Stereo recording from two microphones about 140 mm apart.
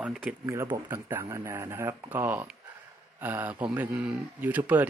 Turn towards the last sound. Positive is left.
turn(degrees=-10)  # may be behind; listen again after turning